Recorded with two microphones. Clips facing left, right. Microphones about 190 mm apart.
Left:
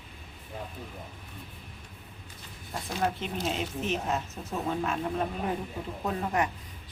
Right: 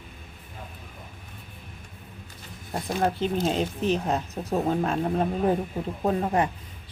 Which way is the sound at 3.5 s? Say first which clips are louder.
Right 6 dB; 35° right (ahead or behind).